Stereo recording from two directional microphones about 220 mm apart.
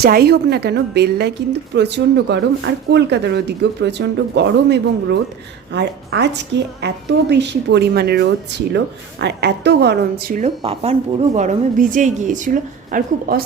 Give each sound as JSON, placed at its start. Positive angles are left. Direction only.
{"t": 0.0, "sound": "speech", "side_deg": -45}
{"t": 10.6, "sound": "speech", "side_deg": -25}